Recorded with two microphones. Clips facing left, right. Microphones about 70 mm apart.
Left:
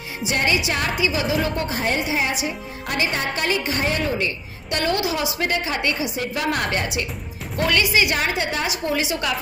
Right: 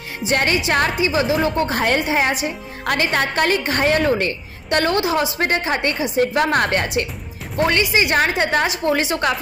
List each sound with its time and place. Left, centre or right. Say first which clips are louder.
0.3 s a woman's voice: right 4 dB; right
1.7 s a woman's voice: right 4 dB; right
7.5 s speech: right 2 dB; right
8.2 s a woman's voice: right 6 dB; right